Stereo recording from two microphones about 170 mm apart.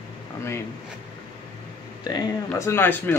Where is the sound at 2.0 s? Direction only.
20° left (ahead or behind).